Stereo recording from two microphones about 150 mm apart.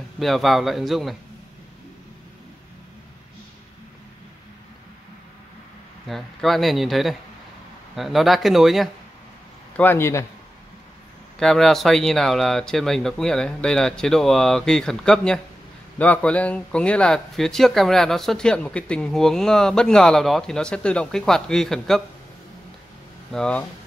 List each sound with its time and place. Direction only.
0.2 s speech: centre (ahead or behind)
6.0 s speech: centre (ahead or behind)
9.8 s speech: 15° left (ahead or behind)
11.3 s speech: 5° left (ahead or behind)
23.3 s speech: 5° left (ahead or behind)